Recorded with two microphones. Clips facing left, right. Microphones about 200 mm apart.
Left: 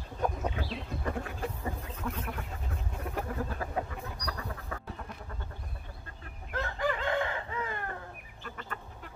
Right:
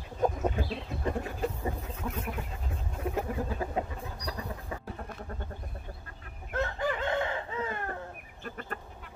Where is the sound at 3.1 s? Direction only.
20° right (ahead or behind).